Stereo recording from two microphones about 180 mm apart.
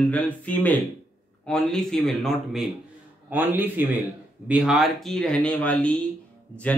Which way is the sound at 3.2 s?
10° right (ahead or behind).